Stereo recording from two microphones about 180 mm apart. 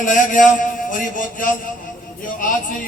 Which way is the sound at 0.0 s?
45° left (ahead or behind).